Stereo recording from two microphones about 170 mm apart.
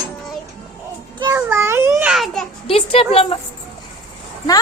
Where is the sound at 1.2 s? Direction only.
15° right (ahead or behind); by 2.5 s centre (ahead or behind).